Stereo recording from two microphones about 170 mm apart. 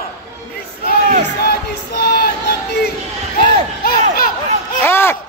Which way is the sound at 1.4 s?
65° left (ahead or behind).